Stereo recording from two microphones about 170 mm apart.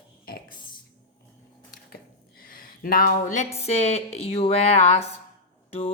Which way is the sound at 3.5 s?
40° left (ahead or behind).